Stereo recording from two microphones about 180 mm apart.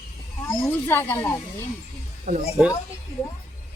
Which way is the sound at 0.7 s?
10° left (ahead or behind).